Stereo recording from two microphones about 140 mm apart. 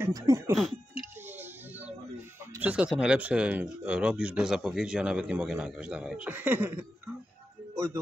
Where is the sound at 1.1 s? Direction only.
15° right (ahead or behind).